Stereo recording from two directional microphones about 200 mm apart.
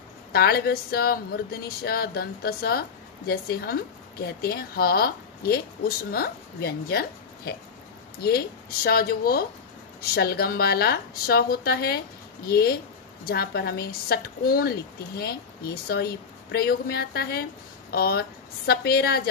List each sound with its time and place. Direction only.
0.3 s a woman's voice: 50° left (ahead or behind)
16.5 s a woman's voice: 50° left (ahead or behind)